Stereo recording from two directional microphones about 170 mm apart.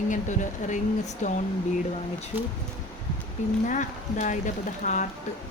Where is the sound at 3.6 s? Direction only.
45° left (ahead or behind).